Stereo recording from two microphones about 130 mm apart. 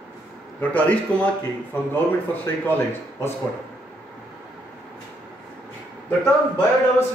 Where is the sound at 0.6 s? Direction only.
10° left (ahead or behind).